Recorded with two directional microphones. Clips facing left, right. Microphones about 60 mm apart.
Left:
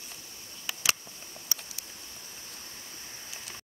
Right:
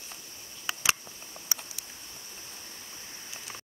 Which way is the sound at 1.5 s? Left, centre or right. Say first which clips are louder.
Right 2 dB; right.